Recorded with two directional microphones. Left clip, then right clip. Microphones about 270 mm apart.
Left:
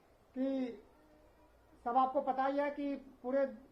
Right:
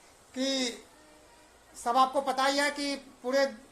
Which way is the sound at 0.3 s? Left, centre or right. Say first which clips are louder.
Right 7 dB; centre.